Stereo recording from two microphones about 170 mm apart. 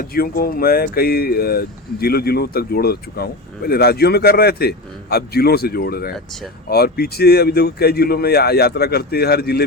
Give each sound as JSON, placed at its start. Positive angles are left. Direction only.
{"t": 0.0, "sound": "speech", "side_deg": 60}